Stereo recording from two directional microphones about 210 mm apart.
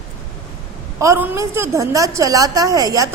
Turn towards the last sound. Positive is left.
turn(degrees=-15)  # may be behind; listen again after turning